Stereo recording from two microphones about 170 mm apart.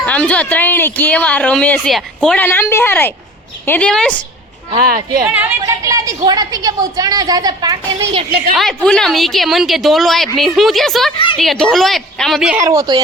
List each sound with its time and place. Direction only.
0.0 s speech: 5° left (ahead or behind)
4.9 s speech: 55° right (ahead or behind)
5.2 s a woman's voice: 10° right (ahead or behind)
5.6 s a woman's voice: 20° right (ahead or behind)
8.5 s a woman's voice: 5° left (ahead or behind)
12.6 s a woman's voice: 25° right (ahead or behind)